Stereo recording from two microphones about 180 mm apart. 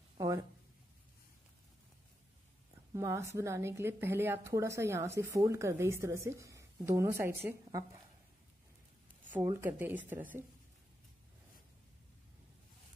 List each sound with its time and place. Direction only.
0.2 s a sound: 20° right (ahead or behind)
2.9 s a woman's voice: 15° right (ahead or behind)
9.4 s a woman's voice: 15° right (ahead or behind)